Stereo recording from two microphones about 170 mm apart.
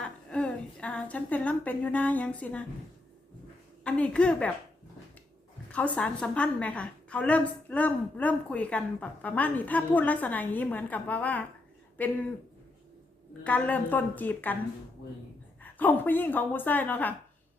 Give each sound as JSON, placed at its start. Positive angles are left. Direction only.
{"t": 0.0, "sound": "a sound", "side_deg": 5}
{"t": 3.8, "sound": "a woman's voice", "side_deg": 5}
{"t": 5.7, "sound": "a woman's voice", "side_deg": 10}
{"t": 13.4, "sound": "a woman's voice", "side_deg": 10}
{"t": 15.6, "sound": "a woman's voice", "side_deg": 10}